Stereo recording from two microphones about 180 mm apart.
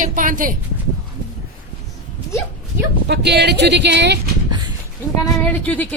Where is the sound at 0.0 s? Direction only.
50° right (ahead or behind).